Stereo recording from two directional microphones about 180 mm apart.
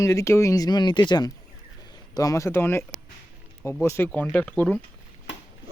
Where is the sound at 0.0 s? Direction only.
15° left (ahead or behind).